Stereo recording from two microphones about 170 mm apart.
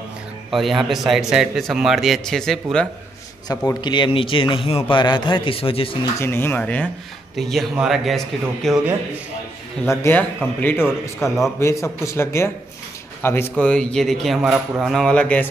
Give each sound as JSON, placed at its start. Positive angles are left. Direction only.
{"t": 0.5, "sound": "a man's voice", "side_deg": 0}
{"t": 3.4, "sound": "speech", "side_deg": 25}
{"t": 6.1, "sound": "a man's voice", "side_deg": 15}
{"t": 9.8, "sound": "speech", "side_deg": 10}
{"t": 11.1, "sound": "a man's voice", "side_deg": 0}
{"t": 11.8, "sound": "a man's voice", "side_deg": 15}